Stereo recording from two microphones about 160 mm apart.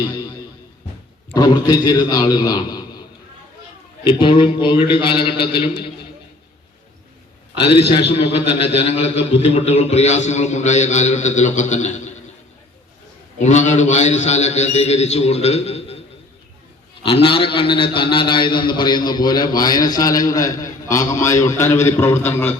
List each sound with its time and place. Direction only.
1.3 s a man's voice: 25° left (ahead or behind)
4.0 s a man's voice: 30° left (ahead or behind)
7.6 s a man's voice: 35° left (ahead or behind)
13.4 s a man's voice: 50° left (ahead or behind)
17.0 s a man's voice: 35° left (ahead or behind); by 22.5 s 15° left (ahead or behind)